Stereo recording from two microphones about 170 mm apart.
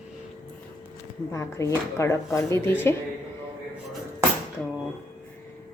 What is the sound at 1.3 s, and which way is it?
Speech, 15° left (ahead or behind).